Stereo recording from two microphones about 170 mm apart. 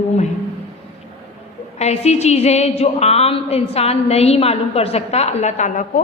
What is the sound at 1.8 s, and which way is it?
A woman's voice, 40° left (ahead or behind).